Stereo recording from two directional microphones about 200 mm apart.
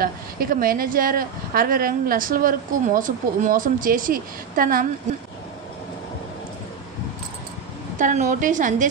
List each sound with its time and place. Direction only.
0.0 s a woman's voice: 45° right (ahead or behind)
8.0 s a woman's voice: 40° right (ahead or behind)